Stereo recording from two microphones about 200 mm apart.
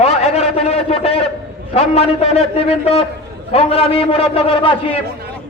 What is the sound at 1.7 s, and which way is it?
A man's voice, 30° left (ahead or behind).